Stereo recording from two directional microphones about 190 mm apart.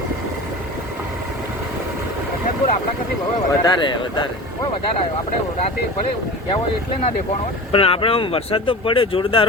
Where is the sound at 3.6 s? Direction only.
25° left (ahead or behind).